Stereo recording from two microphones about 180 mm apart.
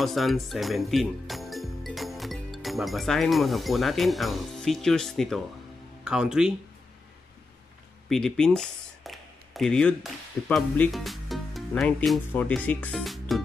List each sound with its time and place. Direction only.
0.0 s speech: centre (ahead or behind)
8.1 s speech: 5° left (ahead or behind)